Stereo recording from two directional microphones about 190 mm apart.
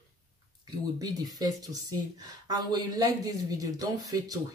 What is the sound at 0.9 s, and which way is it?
Speech, 20° right (ahead or behind).